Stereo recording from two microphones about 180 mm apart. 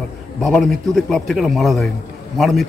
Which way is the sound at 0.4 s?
Centre (ahead or behind).